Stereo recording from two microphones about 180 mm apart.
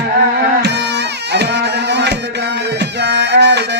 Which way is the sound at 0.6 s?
70° right (ahead or behind).